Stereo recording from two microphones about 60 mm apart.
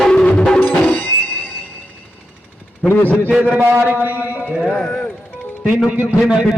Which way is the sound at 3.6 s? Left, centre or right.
Right.